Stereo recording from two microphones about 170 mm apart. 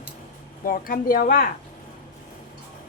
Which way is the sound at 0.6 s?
55° left (ahead or behind).